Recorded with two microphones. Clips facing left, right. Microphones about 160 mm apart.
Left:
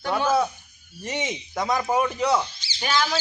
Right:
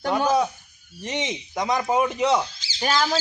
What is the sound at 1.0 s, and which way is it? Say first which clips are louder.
Speech: right 1 dB; 20° right (ahead or behind).